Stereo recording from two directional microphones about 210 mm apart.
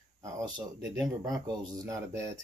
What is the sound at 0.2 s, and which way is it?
Speech, 15° right (ahead or behind).